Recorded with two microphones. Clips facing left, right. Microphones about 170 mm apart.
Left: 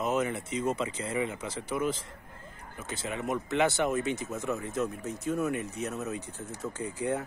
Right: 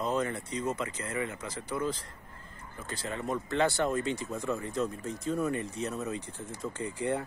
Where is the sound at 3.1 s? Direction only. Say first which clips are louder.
Left 1 dB; 20° left (ahead or behind).